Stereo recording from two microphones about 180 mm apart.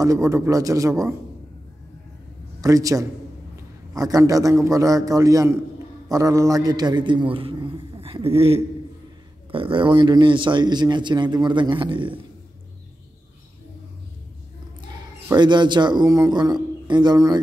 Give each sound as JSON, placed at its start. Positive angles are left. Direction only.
{"t": 0.0, "sound": "a man's voice", "side_deg": -15}
{"t": 2.6, "sound": "a man's voice", "side_deg": -20}
{"t": 15.2, "sound": "a man's voice", "side_deg": -25}